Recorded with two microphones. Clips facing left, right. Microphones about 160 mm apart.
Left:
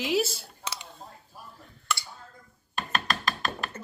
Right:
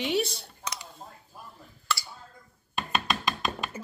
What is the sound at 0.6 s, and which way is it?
Clicking, 25° left (ahead or behind).